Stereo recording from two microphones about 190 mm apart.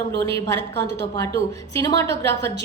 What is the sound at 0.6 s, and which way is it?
Speech, 65° right (ahead or behind).